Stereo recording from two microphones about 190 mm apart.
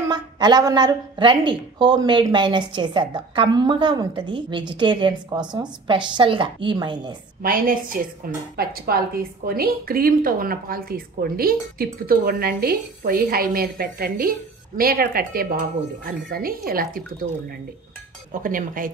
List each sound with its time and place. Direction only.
0.1 s a woman's voice: 20° right (ahead or behind)
7.4 s a woman's voice: 45° right (ahead or behind)
18.3 s a woman's voice: 45° right (ahead or behind)